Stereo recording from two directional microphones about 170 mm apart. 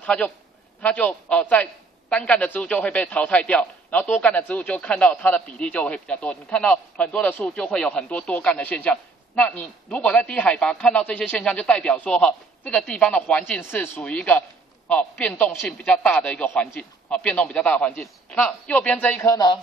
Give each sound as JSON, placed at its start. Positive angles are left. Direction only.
{"t": 0.0, "sound": "a man's voice", "side_deg": 10}
{"t": 19.3, "sound": "speech", "side_deg": 25}